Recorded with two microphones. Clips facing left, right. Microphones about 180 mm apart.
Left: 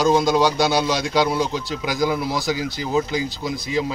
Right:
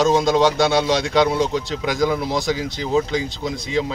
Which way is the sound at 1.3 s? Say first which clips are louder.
Right 2 dB; 20° right (ahead or behind).